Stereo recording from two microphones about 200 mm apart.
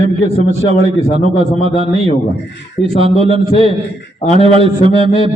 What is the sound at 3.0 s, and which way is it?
A man's voice, 30° right (ahead or behind).